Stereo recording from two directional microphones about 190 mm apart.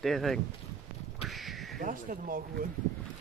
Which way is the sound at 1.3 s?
Centre (ahead or behind).